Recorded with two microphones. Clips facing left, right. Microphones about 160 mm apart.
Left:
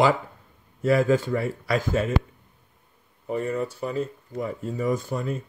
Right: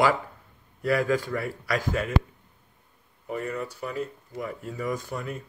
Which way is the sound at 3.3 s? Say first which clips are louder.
Left 5 dB; 30° left (ahead or behind).